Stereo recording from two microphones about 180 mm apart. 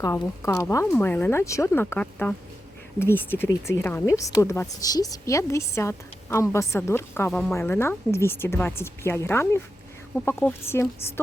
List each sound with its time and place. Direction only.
0.0 s a woman's voice: 15° left (ahead or behind)
7.3 s speech: 5° left (ahead or behind)
7.5 s a woman's voice: 15° left (ahead or behind)